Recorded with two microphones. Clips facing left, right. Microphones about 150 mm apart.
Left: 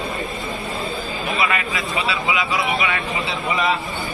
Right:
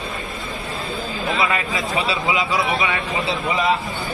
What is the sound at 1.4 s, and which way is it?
Speech, 25° right (ahead or behind).